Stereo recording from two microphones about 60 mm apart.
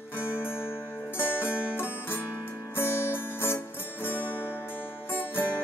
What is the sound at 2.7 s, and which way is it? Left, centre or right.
Music, left.